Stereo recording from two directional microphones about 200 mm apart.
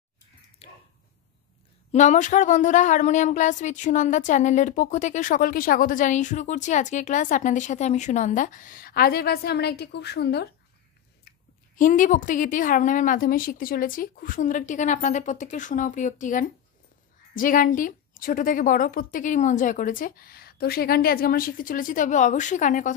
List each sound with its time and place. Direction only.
0.6 s a sound: 30° left (ahead or behind)
1.9 s speech: 35° left (ahead or behind); by 10.5 s 55° left (ahead or behind)
11.7 s a woman's voice: 40° left (ahead or behind)